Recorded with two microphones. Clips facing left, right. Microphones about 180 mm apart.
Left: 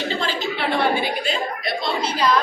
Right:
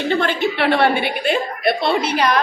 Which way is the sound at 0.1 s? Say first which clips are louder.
Right 6 dB; 60° right (ahead or behind).